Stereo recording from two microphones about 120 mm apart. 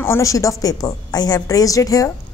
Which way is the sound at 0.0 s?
25° left (ahead or behind).